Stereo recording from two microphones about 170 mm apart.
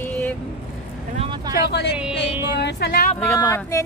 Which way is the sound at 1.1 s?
30° right (ahead or behind).